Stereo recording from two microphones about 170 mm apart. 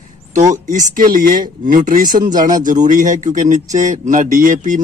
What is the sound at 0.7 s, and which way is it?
A man's voice, 50° right (ahead or behind).